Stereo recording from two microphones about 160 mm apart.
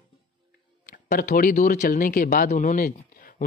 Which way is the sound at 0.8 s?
60° left (ahead or behind).